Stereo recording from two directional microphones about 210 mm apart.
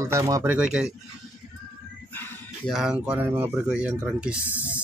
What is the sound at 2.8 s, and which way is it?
Speech, 5° right (ahead or behind).